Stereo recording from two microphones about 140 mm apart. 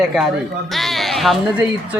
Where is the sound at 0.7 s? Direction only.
Centre (ahead or behind).